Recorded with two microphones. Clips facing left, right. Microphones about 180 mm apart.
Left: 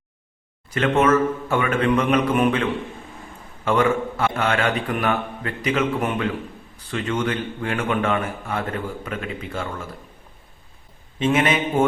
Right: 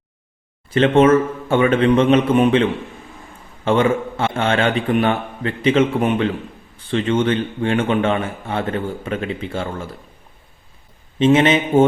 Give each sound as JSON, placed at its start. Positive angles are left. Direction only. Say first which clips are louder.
{"t": 0.7, "sound": "a man's voice", "louder": "right 6 dB", "side_deg": -30}
{"t": 11.2, "sound": "a man's voice", "louder": "right 6 dB", "side_deg": -25}